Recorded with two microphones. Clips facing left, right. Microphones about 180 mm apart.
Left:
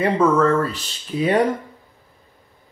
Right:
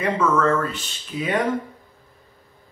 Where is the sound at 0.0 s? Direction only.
35° left (ahead or behind).